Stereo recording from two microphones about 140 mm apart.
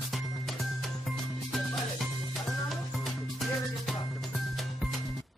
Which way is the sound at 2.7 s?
Centre (ahead or behind).